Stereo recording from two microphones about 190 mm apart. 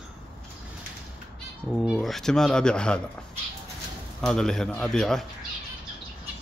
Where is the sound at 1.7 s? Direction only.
5° right (ahead or behind).